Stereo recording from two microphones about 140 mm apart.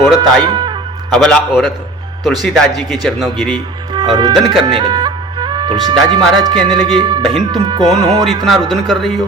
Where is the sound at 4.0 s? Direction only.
35° right (ahead or behind).